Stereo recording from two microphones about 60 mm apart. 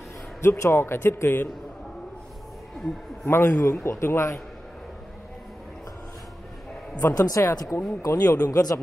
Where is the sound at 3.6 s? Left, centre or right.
Left.